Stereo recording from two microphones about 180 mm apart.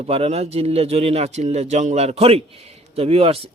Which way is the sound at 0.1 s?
35° right (ahead or behind).